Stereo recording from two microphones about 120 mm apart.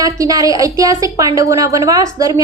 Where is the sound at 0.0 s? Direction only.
30° right (ahead or behind).